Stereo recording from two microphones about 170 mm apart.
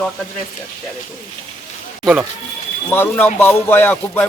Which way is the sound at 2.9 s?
15° left (ahead or behind).